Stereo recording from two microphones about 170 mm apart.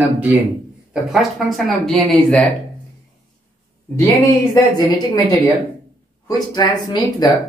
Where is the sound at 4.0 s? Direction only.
20° left (ahead or behind).